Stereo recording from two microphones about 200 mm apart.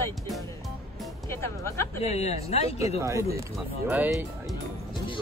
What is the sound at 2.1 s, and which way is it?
Speech, 30° left (ahead or behind).